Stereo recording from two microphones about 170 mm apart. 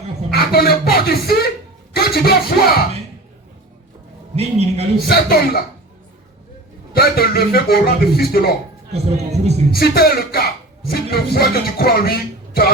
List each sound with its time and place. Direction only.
0.5 s a sound: 65° left (ahead or behind)
1.9 s speech: 65° left (ahead or behind)
4.4 s a man's voice: 35° right (ahead or behind)
5.0 s a sound: 65° left (ahead or behind)
6.9 s a man's voice: 65° left (ahead or behind)
8.9 s a man's voice: 40° right (ahead or behind)
9.7 s a man's voice: 65° left (ahead or behind)